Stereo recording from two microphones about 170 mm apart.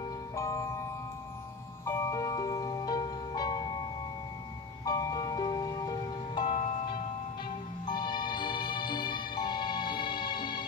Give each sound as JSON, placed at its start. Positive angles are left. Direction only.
{"t": 0.4, "sound": "music", "side_deg": 15}
{"t": 1.9, "sound": "music", "side_deg": 15}
{"t": 4.8, "sound": "music", "side_deg": 20}
{"t": 6.4, "sound": "music", "side_deg": 45}
{"t": 7.8, "sound": "music", "side_deg": 25}